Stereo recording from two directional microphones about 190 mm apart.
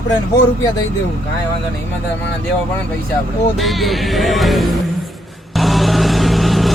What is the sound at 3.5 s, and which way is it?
Speech, centre (ahead or behind).